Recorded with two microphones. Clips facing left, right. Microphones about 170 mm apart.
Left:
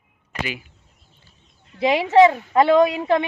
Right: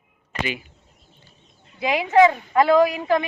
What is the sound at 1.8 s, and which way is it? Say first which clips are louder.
Speech: left 2 dB; 25° left (ahead or behind).